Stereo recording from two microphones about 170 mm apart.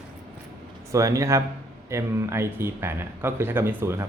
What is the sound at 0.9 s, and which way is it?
Speech, 20° right (ahead or behind).